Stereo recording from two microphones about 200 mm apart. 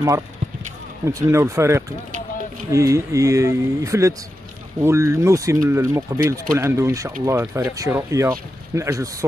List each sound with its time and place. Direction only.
1.0 s speech: 15° right (ahead or behind)